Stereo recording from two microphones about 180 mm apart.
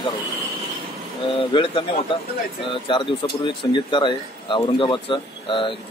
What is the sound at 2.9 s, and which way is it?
Speech, 25° left (ahead or behind).